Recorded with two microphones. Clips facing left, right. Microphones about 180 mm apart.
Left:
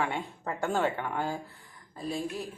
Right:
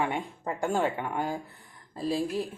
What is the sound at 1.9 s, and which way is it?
Speech, 30° right (ahead or behind).